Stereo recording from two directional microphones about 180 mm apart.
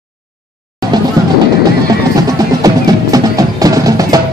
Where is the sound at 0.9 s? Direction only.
25° right (ahead or behind).